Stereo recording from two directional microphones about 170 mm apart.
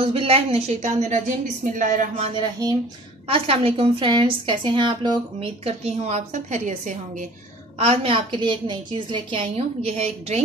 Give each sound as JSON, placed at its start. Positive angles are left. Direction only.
{"t": 0.0, "sound": "a woman's voice", "side_deg": -35}
{"t": 2.1, "sound": "a woman's voice", "side_deg": -35}
{"t": 7.8, "sound": "a woman's voice", "side_deg": -35}